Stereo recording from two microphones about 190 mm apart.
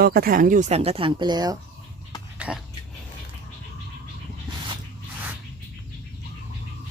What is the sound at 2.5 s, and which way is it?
Speech, 5° right (ahead or behind).